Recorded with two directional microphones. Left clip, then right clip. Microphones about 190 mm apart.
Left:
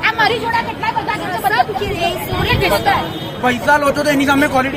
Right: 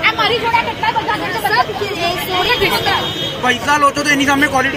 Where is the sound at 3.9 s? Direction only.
20° left (ahead or behind).